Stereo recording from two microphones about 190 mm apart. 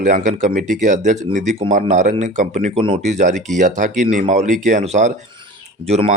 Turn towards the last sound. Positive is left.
turn(degrees=-35)  # may be behind; listen again after turning